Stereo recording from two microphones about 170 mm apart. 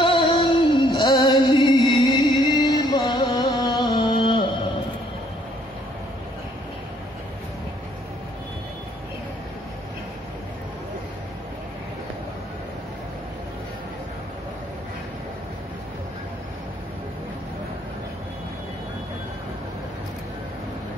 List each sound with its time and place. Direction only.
0.0 s music: 30° left (ahead or behind)